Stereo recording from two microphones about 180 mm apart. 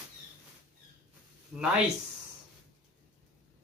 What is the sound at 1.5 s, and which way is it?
Speech, 5° right (ahead or behind).